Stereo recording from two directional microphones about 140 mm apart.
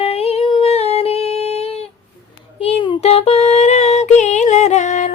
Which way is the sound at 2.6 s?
40° left (ahead or behind).